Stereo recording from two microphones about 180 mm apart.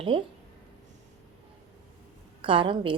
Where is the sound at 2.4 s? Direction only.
30° right (ahead or behind).